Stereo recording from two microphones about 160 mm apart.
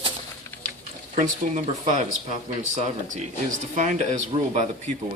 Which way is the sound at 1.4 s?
60° right (ahead or behind).